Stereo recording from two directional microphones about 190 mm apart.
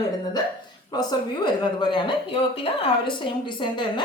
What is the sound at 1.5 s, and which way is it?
A woman's voice, 25° left (ahead or behind).